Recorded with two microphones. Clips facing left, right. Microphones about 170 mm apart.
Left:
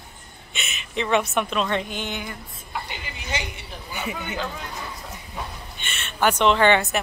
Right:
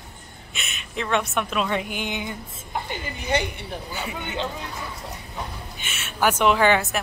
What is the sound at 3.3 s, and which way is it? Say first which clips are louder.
Speech: right 7 dB; 60° right (ahead or behind).